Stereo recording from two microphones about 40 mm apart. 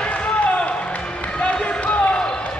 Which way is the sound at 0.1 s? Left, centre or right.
Left.